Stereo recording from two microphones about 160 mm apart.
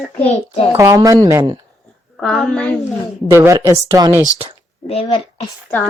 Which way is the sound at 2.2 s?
Centre (ahead or behind).